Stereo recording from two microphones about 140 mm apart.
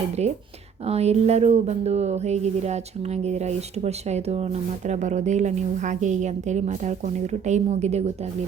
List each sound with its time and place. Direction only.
0.2 s a woman's voice: 50° right (ahead or behind)